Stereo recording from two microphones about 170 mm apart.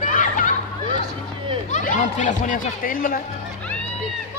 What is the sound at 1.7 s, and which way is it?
Speech, 45° left (ahead or behind).